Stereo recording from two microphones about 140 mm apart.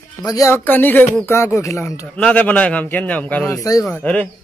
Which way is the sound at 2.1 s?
5° left (ahead or behind).